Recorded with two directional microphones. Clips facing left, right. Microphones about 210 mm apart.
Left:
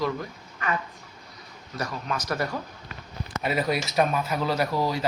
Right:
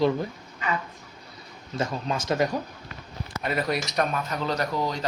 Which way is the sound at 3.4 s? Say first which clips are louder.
Left 1 dB; 5° left (ahead or behind).